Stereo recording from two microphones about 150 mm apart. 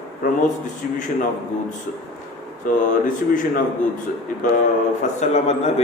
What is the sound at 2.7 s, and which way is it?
Speech, 65° left (ahead or behind).